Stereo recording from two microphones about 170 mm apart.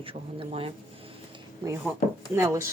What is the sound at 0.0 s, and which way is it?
Speech, 35° right (ahead or behind).